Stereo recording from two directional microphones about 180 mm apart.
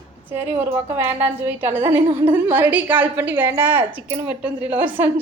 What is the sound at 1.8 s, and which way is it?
Speech, 25° right (ahead or behind).